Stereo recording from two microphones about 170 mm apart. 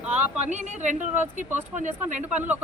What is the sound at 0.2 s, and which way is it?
A woman's voice, 45° right (ahead or behind).